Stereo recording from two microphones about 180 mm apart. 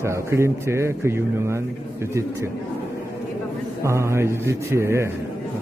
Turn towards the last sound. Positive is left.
turn(degrees=-15)  # may be behind; listen again after turning